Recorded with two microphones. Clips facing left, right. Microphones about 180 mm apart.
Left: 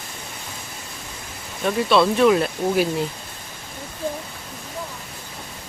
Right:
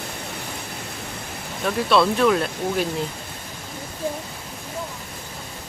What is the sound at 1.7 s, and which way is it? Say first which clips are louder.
Speech: left 1 dB; centre (ahead or behind).